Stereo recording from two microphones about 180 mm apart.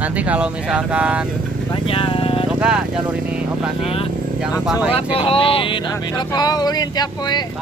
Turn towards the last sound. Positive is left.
turn(degrees=20)  # may be behind; listen again after turning